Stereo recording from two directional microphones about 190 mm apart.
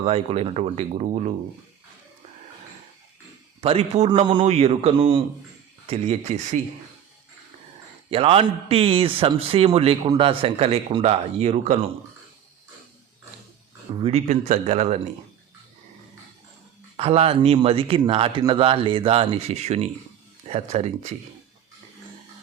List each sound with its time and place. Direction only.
0.0 s a man's voice: 35° right (ahead or behind)
3.6 s a man's voice: 30° right (ahead or behind)
8.1 s a man's voice: 30° right (ahead or behind)
13.9 s a man's voice: 30° right (ahead or behind)
17.0 s a man's voice: 30° right (ahead or behind)